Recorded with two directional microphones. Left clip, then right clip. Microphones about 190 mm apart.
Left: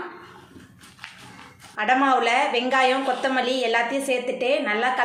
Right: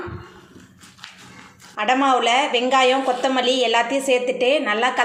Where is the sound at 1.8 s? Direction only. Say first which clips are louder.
Right 2 dB; 20° right (ahead or behind).